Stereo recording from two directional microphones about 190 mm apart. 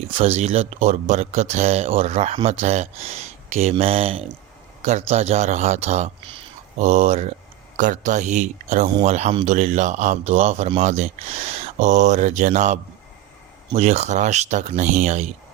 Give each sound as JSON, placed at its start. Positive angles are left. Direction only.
{"t": 0.2, "sound": "speech", "side_deg": -35}